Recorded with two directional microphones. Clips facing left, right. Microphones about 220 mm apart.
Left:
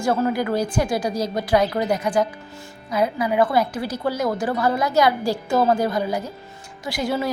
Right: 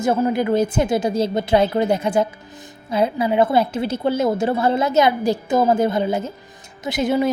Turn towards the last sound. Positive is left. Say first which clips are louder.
# right 5 dB
turn(degrees=-20)  # may be behind; listen again after turning